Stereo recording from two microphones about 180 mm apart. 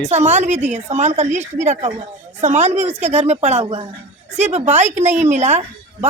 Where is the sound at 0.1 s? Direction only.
40° right (ahead or behind).